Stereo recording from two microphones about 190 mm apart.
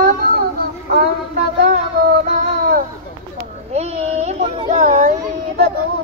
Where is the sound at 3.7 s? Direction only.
35° right (ahead or behind).